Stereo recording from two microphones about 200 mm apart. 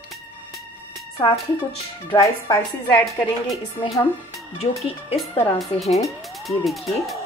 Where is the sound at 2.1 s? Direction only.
20° left (ahead or behind).